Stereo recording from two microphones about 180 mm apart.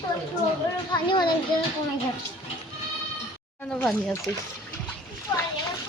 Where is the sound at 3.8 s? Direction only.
10° left (ahead or behind).